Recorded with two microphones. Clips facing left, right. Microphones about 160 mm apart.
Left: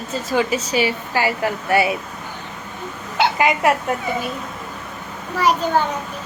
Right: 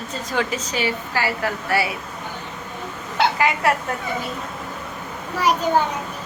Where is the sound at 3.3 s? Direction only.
20° left (ahead or behind).